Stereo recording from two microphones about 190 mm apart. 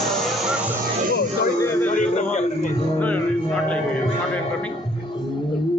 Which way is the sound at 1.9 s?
40° left (ahead or behind).